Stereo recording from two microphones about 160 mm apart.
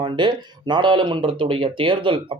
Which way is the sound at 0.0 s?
30° right (ahead or behind).